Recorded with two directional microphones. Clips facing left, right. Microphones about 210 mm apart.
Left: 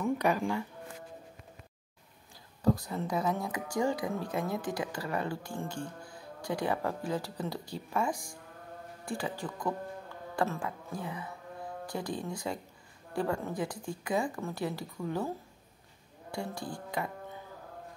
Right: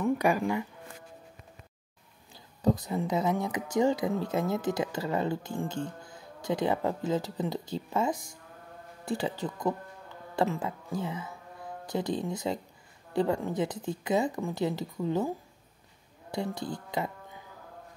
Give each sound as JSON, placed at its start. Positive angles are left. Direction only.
{"t": 0.0, "sound": "speech", "side_deg": -5}
{"t": 2.6, "sound": "speech", "side_deg": -20}
{"t": 10.3, "sound": "music", "side_deg": -20}
{"t": 11.8, "sound": "speech", "side_deg": -20}